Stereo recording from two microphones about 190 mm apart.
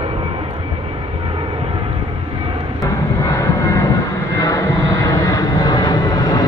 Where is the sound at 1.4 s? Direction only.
30° right (ahead or behind).